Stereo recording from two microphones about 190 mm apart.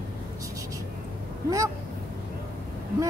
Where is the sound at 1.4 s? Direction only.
15° right (ahead or behind).